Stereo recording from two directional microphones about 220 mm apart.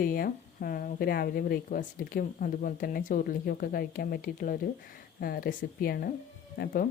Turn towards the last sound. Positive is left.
turn(degrees=40)  # may be behind; listen again after turning